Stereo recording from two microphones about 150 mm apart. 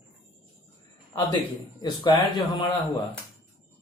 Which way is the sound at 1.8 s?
30° left (ahead or behind).